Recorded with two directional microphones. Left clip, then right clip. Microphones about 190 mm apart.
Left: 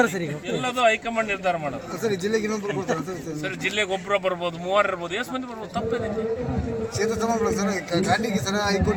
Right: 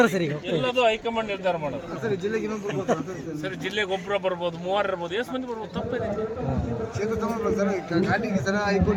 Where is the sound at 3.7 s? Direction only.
10° left (ahead or behind).